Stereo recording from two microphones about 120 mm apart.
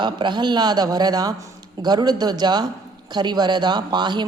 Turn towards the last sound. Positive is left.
turn(degrees=-40)  # may be behind; listen again after turning